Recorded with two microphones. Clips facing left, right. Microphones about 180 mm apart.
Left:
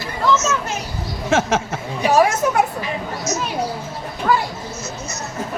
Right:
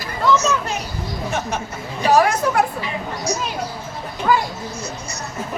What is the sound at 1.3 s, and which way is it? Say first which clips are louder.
Speech: left 9 dB; 90° left.